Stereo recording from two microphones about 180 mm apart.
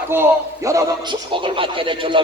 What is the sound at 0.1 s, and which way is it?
A man's voice, 15° right (ahead or behind).